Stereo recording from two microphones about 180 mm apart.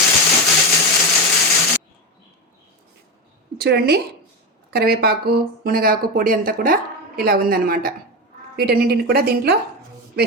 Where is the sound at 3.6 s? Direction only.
65° right (ahead or behind).